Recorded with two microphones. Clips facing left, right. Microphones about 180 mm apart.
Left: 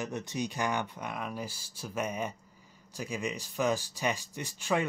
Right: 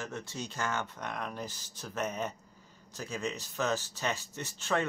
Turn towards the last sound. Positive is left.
turn(degrees=10)  # may be behind; listen again after turning